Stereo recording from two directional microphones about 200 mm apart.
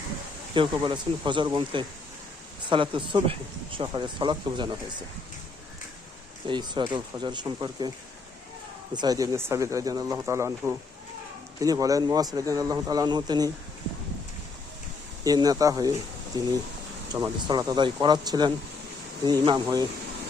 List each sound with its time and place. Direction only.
0.5 s speech: 25° right (ahead or behind)
6.5 s speech: 20° right (ahead or behind)
9.0 s speech: 20° right (ahead or behind)
15.2 s speech: 20° right (ahead or behind)